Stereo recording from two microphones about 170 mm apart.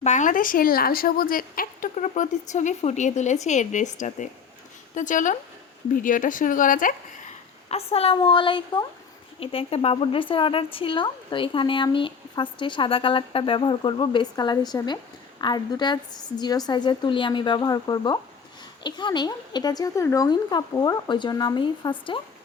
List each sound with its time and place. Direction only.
0.0 s speech: 45° left (ahead or behind)
7.7 s speech: 35° left (ahead or behind)